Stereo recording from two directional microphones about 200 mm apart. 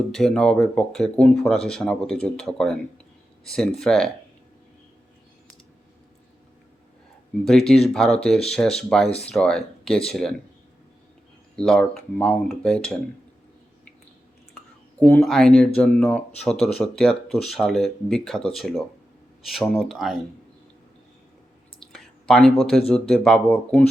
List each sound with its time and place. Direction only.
0.1 s speech: 5° left (ahead or behind)
7.9 s speech: 5° left (ahead or behind)
11.5 s speech: 5° left (ahead or behind)
14.5 s speech: 5° left (ahead or behind)
21.8 s a sound: centre (ahead or behind)
22.9 s speech: 5° left (ahead or behind)